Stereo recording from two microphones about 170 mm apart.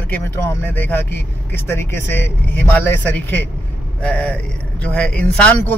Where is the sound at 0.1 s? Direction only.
10° left (ahead or behind).